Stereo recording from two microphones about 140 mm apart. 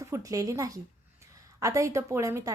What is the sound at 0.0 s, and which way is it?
A woman's voice, 20° right (ahead or behind).